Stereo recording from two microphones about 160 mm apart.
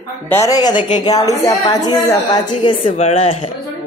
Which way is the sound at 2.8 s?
40° left (ahead or behind).